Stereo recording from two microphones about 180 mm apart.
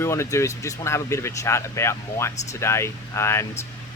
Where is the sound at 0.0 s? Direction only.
15° left (ahead or behind).